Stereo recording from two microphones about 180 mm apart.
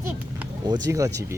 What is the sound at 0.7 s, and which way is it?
Speech, 20° right (ahead or behind).